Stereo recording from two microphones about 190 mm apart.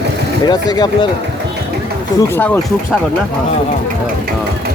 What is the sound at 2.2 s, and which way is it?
Speech, 10° left (ahead or behind).